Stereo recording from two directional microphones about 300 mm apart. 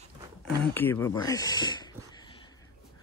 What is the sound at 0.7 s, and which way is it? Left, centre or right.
Speech, centre.